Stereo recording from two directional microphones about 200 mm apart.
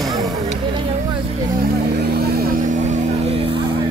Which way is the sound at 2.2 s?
50° right (ahead or behind).